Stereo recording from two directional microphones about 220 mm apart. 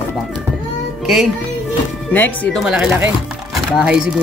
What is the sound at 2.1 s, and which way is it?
Speech, 5° left (ahead or behind).